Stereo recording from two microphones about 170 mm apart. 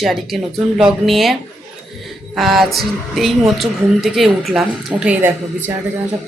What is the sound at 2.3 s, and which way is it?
A woman's voice, centre (ahead or behind).